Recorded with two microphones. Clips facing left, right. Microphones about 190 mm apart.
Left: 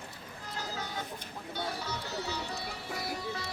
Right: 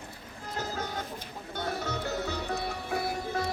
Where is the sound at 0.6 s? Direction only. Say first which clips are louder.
Right 4 dB; 45° right (ahead or behind).